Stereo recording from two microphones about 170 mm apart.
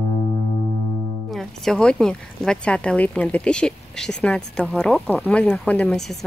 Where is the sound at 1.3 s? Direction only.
Centre (ahead or behind).